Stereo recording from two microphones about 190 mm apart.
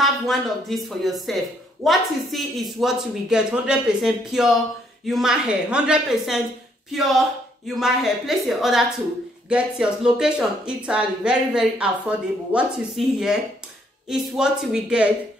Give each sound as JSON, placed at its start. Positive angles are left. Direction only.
{"t": 0.0, "sound": "speech", "side_deg": 0}